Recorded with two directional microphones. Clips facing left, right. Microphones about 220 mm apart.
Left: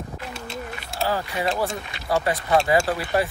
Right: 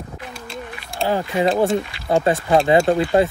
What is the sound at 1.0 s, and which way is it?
Speech, 20° right (ahead or behind).